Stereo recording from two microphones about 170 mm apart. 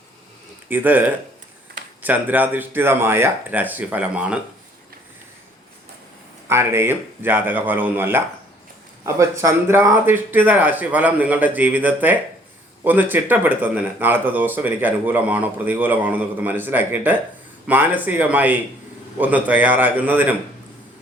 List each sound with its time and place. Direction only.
0.7 s speech: 10° right (ahead or behind)
6.5 s speech: 15° right (ahead or behind)
9.4 s speech: 15° right (ahead or behind)